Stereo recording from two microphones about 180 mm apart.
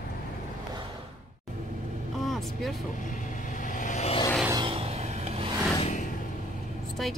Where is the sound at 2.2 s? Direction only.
Centre (ahead or behind).